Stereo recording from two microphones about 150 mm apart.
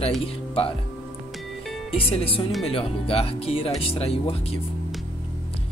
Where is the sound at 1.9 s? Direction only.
40° left (ahead or behind).